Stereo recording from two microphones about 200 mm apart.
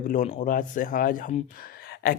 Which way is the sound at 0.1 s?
40° left (ahead or behind).